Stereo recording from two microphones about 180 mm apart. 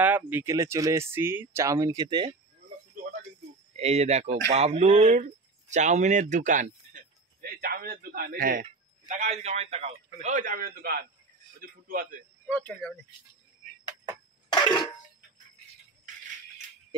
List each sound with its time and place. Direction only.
0.0 s speech: 10° right (ahead or behind)
3.7 s speech: 35° right (ahead or behind)
7.6 s a man's voice: 55° right (ahead or behind); by 9.9 s 35° right (ahead or behind)
10.2 s a man's voice: 45° right (ahead or behind)
12.4 s speech: 10° left (ahead or behind)